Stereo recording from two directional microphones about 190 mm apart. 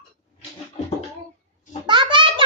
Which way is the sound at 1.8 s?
25° right (ahead or behind).